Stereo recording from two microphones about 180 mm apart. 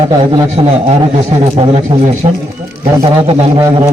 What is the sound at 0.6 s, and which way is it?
Speech, 25° right (ahead or behind).